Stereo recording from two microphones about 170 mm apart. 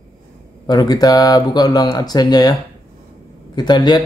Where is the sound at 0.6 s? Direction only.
25° left (ahead or behind).